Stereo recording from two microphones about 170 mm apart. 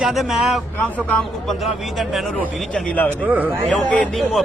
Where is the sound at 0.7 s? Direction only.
10° left (ahead or behind).